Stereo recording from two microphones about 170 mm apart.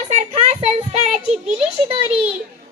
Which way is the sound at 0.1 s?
40° right (ahead or behind).